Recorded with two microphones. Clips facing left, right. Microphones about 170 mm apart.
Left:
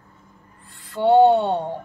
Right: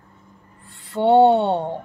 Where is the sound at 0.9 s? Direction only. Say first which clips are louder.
Even; 25° right (ahead or behind).